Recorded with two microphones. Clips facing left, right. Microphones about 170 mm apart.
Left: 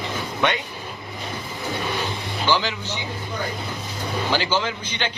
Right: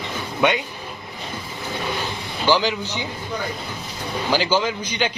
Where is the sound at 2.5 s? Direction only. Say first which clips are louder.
Right 4 dB; 15° right (ahead or behind).